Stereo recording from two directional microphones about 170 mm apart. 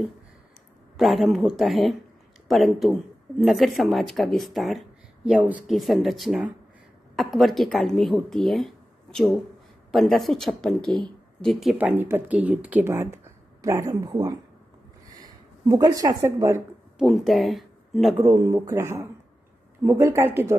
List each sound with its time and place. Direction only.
0.9 s speech: centre (ahead or behind)
11.9 s speech: 10° right (ahead or behind)
15.1 s speech: 20° right (ahead or behind)
17.0 s speech: centre (ahead or behind)
18.2 s speech: 20° right (ahead or behind)